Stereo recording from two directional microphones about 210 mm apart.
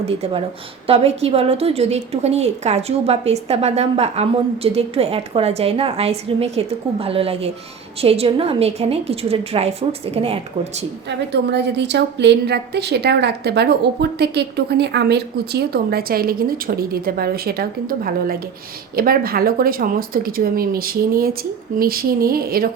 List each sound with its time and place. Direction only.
0.0 s a woman's voice: 30° right (ahead or behind)
11.3 s speech: 55° right (ahead or behind)